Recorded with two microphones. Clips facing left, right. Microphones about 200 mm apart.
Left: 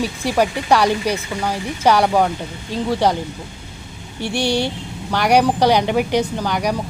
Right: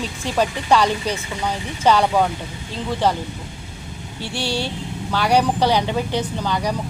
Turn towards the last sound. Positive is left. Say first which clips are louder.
# left 2 dB
turn(degrees=15)  # may be behind; listen again after turning